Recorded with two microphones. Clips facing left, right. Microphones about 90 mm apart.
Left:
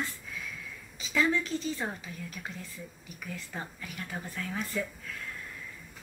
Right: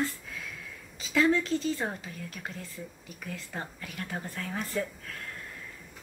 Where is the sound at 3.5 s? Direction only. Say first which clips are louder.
Right 2 dB; 40° right (ahead or behind).